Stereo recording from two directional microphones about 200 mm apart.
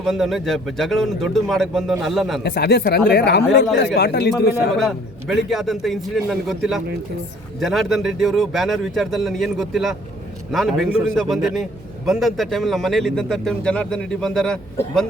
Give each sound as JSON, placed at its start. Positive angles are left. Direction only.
{"t": 0.0, "sound": "a man's voice", "side_deg": 0}
{"t": 2.4, "sound": "speech", "side_deg": 55}
{"t": 4.8, "sound": "a man's voice", "side_deg": 0}